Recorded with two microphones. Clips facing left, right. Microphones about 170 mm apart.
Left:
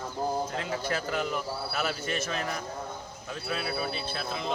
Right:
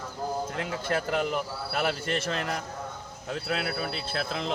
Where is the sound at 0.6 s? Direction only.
60° right (ahead or behind).